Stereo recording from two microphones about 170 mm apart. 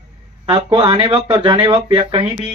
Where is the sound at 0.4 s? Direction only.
30° right (ahead or behind).